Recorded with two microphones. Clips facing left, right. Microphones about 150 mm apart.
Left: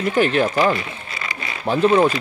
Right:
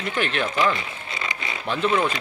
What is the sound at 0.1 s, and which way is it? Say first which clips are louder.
Speech: left 7 dB; 40° left (ahead or behind).